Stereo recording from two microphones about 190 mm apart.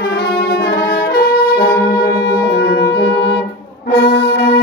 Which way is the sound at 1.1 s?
50° left (ahead or behind).